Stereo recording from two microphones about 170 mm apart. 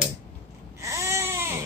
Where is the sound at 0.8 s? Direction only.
15° right (ahead or behind).